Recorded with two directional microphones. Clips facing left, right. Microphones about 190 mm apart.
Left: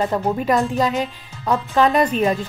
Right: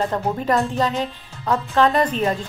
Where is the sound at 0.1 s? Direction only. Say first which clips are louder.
Left 2 dB; 10° left (ahead or behind).